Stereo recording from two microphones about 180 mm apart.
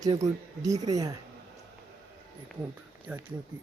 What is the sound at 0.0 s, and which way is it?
Speech, 20° right (ahead or behind).